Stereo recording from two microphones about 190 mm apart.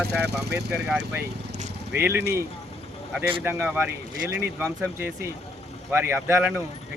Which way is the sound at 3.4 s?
10° right (ahead or behind).